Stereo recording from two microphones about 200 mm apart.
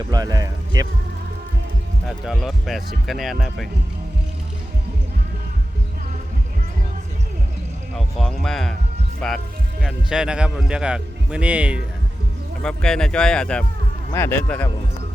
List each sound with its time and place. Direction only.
0.1 s speech: 20° right (ahead or behind)
2.0 s speech: centre (ahead or behind)
8.2 s speech: centre (ahead or behind)